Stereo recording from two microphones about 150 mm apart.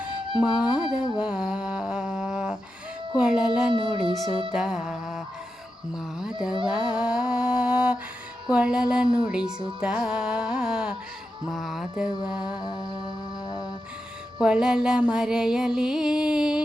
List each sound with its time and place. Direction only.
0.3 s music: 5° right (ahead or behind)
1.2 s a sound: 5° right (ahead or behind)
3.2 s music: 5° right (ahead or behind)
3.7 s music: 35° right (ahead or behind)
4.5 s music: 5° right (ahead or behind)
6.7 s mantra: 5° right (ahead or behind)
8.4 s music: 5° right (ahead or behind)
12.5 s music: 30° left (ahead or behind)
14.4 s music: 5° right (ahead or behind)